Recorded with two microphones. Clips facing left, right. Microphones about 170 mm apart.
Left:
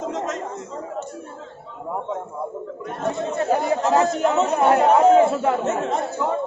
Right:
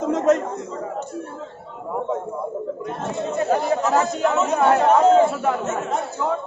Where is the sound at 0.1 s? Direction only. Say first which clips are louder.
Right 9 dB; 55° right (ahead or behind).